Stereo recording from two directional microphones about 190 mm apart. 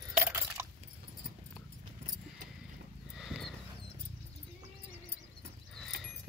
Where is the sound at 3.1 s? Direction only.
Centre (ahead or behind).